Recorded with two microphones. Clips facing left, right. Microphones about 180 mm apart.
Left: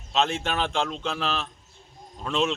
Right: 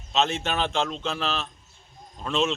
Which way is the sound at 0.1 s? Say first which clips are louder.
Even; 10° left (ahead or behind).